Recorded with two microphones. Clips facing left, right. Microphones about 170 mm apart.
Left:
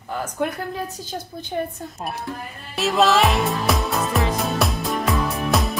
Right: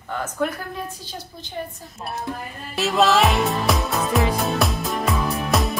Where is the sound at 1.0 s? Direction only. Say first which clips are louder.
Left 5 dB; 50° left (ahead or behind).